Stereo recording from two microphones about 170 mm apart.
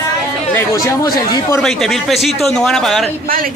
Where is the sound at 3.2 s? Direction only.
55° right (ahead or behind).